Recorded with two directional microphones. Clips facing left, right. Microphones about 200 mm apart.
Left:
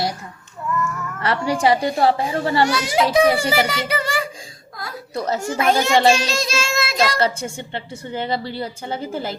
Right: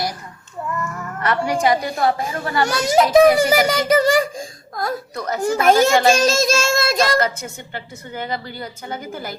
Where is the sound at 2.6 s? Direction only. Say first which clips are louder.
Right 2 dB; 45° right (ahead or behind).